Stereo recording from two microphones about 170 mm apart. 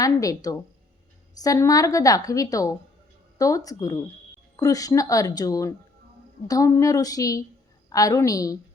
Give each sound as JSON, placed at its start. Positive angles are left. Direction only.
{"t": 0.0, "sound": "a woman's voice", "side_deg": 20}